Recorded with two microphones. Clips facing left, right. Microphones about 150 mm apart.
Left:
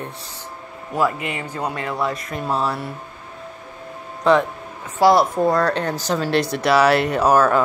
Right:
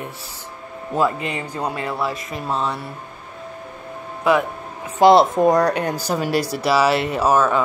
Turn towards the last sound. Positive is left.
turn(degrees=0)  # may be behind; listen again after turning